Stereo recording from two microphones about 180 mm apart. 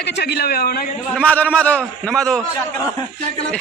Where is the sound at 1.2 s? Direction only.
10° left (ahead or behind).